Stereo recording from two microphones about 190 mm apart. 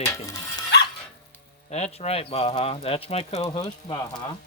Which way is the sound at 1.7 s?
35° left (ahead or behind).